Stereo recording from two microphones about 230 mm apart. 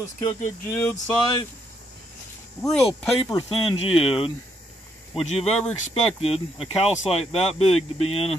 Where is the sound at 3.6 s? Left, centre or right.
Left.